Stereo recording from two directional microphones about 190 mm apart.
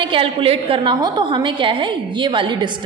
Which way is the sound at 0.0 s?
25° right (ahead or behind).